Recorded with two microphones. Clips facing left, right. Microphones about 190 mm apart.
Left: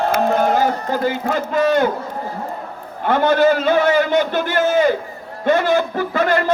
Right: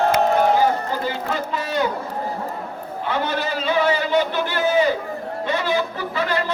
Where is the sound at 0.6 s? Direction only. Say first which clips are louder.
Left 2 dB; 50° left (ahead or behind).